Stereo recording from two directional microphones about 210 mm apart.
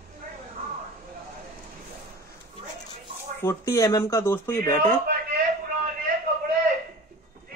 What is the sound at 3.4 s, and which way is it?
Speech, 10° left (ahead or behind).